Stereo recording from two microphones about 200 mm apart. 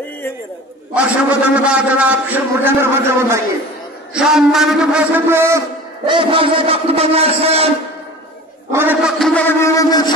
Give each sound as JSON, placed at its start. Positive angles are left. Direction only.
{"t": 0.9, "sound": "a man's voice", "side_deg": -5}
{"t": 6.0, "sound": "a man's voice", "side_deg": -25}
{"t": 8.7, "sound": "a man's voice", "side_deg": -10}
{"t": 9.2, "sound": "a sound", "side_deg": 10}